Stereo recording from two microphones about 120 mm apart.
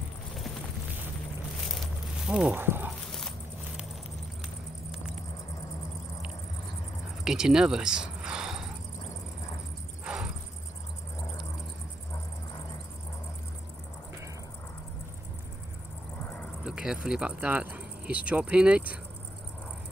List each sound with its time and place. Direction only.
2.2 s speech: 5° right (ahead or behind)
2.5 s speech: 15° right (ahead or behind)
2.9 s dog: 5° left (ahead or behind)
7.2 s speech: 5° right (ahead or behind)
10.0 s cricket: 10° right (ahead or behind)
16.6 s speech: 5° right (ahead or behind)